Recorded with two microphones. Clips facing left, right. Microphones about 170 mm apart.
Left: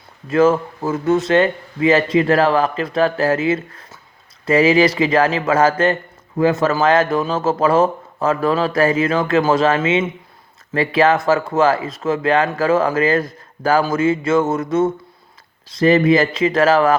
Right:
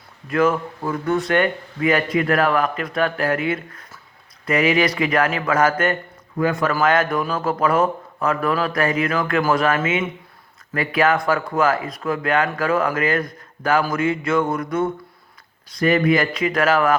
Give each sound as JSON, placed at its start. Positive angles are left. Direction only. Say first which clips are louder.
{"t": 0.3, "sound": "a man's voice", "louder": "left 5 dB", "side_deg": 25}